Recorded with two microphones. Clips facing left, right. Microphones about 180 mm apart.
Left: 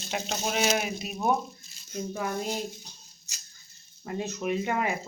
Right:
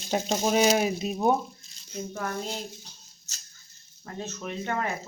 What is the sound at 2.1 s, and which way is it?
Speech, 10° left (ahead or behind).